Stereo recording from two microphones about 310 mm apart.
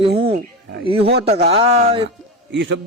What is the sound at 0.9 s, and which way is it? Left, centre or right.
A man's voice, centre.